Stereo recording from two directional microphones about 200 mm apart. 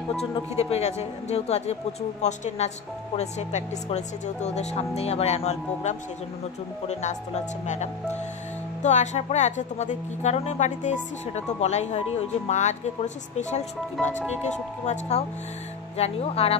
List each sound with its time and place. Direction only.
0.1 s speech: 30° left (ahead or behind)
14.9 s speech: 35° left (ahead or behind)